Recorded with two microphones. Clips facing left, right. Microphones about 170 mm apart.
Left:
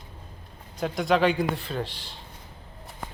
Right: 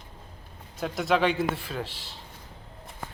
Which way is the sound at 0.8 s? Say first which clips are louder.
Left 2 dB; centre (ahead or behind).